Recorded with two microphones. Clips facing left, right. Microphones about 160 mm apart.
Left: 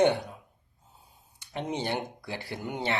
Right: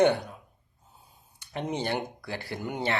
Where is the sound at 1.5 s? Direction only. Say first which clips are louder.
Right 1 dB; 20° left (ahead or behind).